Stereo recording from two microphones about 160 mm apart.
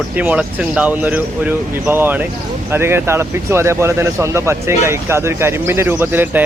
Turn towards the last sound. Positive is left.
turn(degrees=-15)  # may be behind; listen again after turning